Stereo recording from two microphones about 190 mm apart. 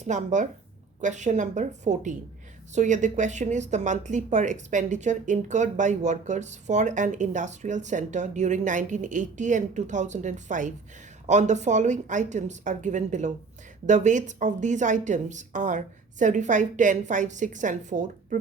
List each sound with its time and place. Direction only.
0.0 s speech: 40° right (ahead or behind)